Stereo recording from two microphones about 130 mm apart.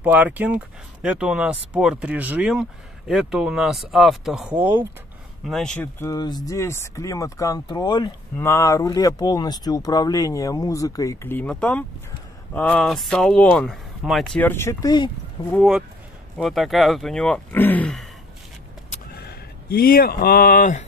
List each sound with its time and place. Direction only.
0.0 s speech: 15° right (ahead or behind)
4.6 s speech: 15° right (ahead or behind)
5.4 s speech: 5° left (ahead or behind)
5.9 s speech: 30° left (ahead or behind)
8.4 s speech: 20° left (ahead or behind)
11.4 s speech: 5° left (ahead or behind)
14.5 s speech: 20° left (ahead or behind)
15.4 s speech: 40° left (ahead or behind)
16.3 s speech: centre (ahead or behind)
20.4 s speech: 85° left